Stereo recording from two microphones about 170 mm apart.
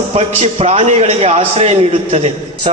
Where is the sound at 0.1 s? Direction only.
35° right (ahead or behind).